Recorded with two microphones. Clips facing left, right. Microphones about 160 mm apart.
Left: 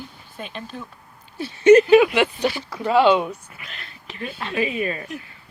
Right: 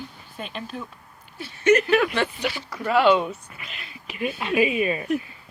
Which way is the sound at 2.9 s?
25° left (ahead or behind).